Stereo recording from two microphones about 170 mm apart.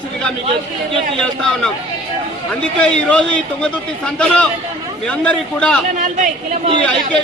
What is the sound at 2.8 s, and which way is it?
A man's voice, 5° left (ahead or behind).